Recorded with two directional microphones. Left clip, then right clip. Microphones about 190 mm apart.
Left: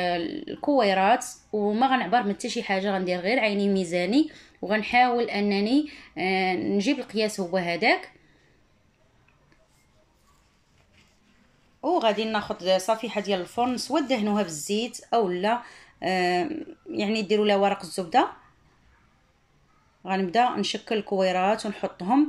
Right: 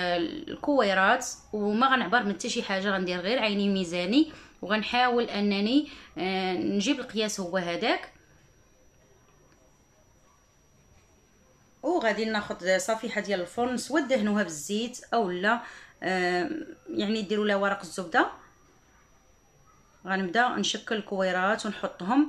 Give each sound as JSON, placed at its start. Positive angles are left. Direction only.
{"t": 0.0, "sound": "speech", "side_deg": 0}
{"t": 11.8, "sound": "speech", "side_deg": 5}
{"t": 20.0, "sound": "a man's voice", "side_deg": 0}